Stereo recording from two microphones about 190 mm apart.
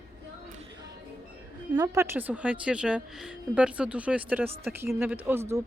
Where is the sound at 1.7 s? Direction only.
20° right (ahead or behind).